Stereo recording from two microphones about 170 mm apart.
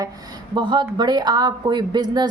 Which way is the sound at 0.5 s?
25° right (ahead or behind).